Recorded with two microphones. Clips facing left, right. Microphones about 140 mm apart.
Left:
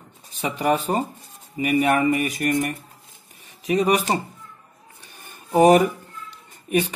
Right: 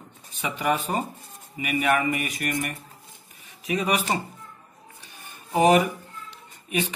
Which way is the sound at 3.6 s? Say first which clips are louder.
Left 5 dB; 35° left (ahead or behind).